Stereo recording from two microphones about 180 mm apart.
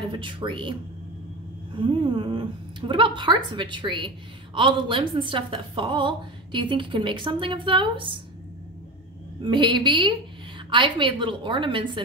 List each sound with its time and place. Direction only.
0.1 s a woman's voice: 25° right (ahead or behind)
1.8 s a woman's voice: 25° right (ahead or behind)
9.4 s a woman's voice: 25° right (ahead or behind)